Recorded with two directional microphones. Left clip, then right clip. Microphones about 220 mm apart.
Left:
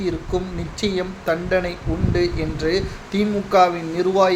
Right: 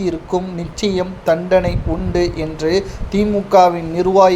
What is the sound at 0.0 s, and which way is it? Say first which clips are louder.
Speech: right 4 dB; 15° right (ahead or behind).